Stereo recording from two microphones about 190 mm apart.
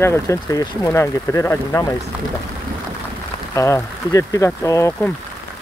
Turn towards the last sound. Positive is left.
turn(degrees=15)  # may be behind; listen again after turning